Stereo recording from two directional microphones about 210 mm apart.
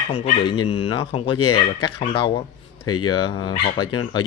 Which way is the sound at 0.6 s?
90° left.